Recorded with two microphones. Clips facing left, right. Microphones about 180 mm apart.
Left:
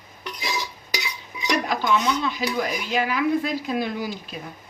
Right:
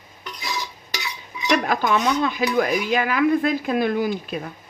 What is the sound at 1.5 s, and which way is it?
Speech, 55° right (ahead or behind).